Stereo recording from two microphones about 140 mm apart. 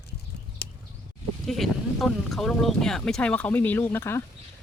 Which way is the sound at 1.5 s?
Centre (ahead or behind).